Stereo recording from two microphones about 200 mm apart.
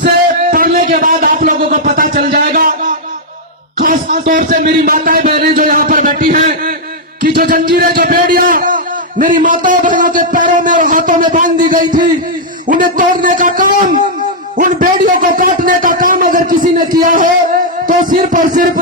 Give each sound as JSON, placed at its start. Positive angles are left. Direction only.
{"t": 0.5, "sound": "music", "side_deg": -45}
{"t": 3.8, "sound": "music", "side_deg": -40}
{"t": 7.7, "sound": "a man's voice", "side_deg": -45}